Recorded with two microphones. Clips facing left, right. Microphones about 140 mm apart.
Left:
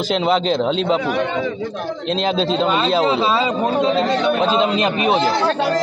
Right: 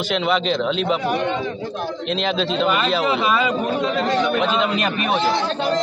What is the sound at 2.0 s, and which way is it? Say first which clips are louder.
A man's voice: left 4 dB; 35° left (ahead or behind).